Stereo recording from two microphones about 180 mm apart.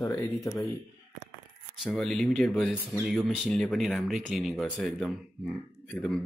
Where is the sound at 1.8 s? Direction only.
Centre (ahead or behind).